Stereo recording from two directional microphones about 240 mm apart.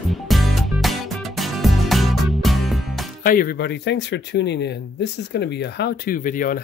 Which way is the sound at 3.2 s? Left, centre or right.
Left.